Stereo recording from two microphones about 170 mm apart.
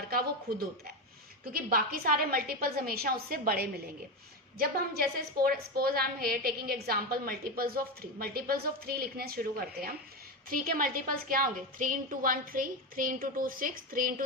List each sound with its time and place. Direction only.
0.5 s a woman's voice: 65° right (ahead or behind)